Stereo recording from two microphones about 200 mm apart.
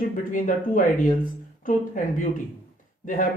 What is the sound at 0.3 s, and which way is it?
Speech, 40° left (ahead or behind).